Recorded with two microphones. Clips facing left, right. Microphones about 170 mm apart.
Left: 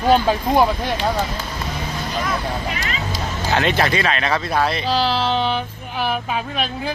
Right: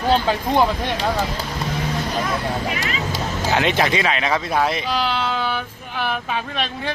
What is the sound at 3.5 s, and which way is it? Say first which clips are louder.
Speech: left 1 dB; 15° right (ahead or behind).